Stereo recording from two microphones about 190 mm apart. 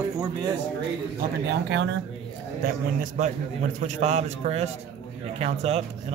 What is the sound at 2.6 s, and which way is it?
A man's voice, 45° right (ahead or behind).